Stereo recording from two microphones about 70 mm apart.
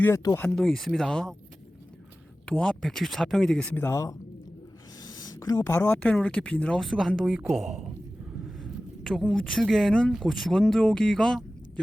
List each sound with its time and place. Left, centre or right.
0.4 s speech: centre
2.5 s speech: centre
3.8 s speech: left
4.9 s a sound: left
5.6 s a woman's voice: left; by 7.9 s centre
8.6 s a sound: centre
9.3 s speech: centre